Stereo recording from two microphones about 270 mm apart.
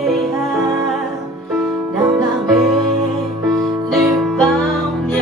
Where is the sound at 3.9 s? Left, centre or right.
Centre.